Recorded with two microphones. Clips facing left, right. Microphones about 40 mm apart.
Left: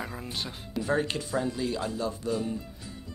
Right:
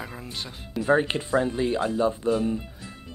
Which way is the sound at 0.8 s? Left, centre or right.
Right.